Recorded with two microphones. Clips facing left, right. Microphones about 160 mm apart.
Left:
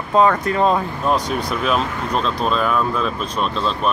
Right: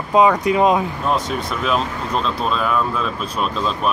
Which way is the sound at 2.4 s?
Centre (ahead or behind).